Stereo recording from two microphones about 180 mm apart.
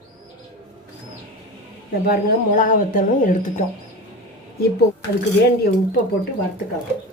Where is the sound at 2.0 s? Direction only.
55° left (ahead or behind).